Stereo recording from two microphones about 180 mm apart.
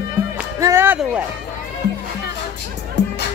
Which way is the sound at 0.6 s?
15° right (ahead or behind).